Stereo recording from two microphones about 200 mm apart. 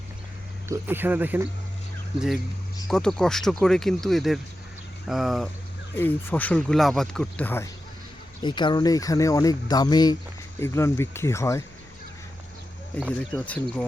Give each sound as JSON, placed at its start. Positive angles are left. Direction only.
{"t": 0.7, "sound": "speech", "side_deg": -10}
{"t": 2.9, "sound": "speech", "side_deg": 5}
{"t": 5.9, "sound": "speech", "side_deg": 10}
{"t": 8.4, "sound": "speech", "side_deg": 25}
{"t": 13.1, "sound": "speech", "side_deg": 5}